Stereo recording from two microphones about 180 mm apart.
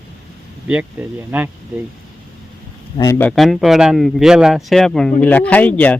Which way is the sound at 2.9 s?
20° left (ahead or behind).